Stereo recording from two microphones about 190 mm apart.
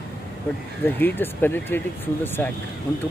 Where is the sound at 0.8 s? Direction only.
10° left (ahead or behind).